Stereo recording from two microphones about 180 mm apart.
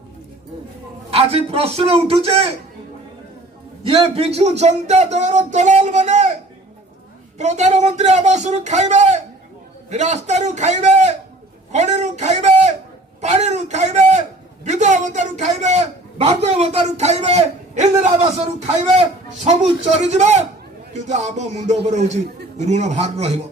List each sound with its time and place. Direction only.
1.1 s a man's voice: 35° right (ahead or behind)
3.8 s a man's voice: 35° right (ahead or behind)
7.3 s a man's voice: 40° right (ahead or behind)
11.7 s a sound: 40° right (ahead or behind)
14.6 s a man's voice: 40° right (ahead or behind)